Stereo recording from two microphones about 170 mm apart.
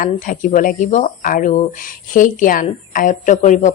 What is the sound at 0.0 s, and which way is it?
Speech, 50° left (ahead or behind).